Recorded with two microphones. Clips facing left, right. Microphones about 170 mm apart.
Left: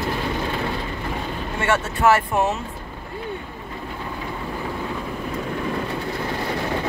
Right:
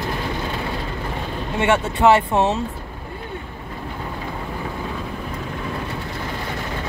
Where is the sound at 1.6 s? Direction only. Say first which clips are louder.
Right 4 dB; 20° right (ahead or behind).